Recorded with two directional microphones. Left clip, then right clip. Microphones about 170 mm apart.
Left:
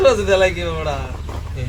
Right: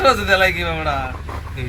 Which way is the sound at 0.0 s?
20° right (ahead or behind).